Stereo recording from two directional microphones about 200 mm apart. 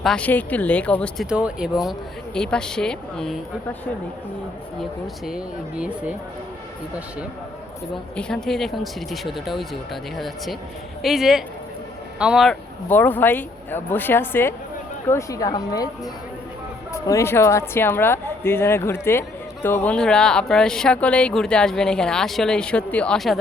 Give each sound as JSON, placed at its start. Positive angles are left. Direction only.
{"t": 0.0, "sound": "speech", "side_deg": 5}
{"t": 4.8, "sound": "speech", "side_deg": 0}
{"t": 8.1, "sound": "speech", "side_deg": 5}
{"t": 17.1, "sound": "speech", "side_deg": 15}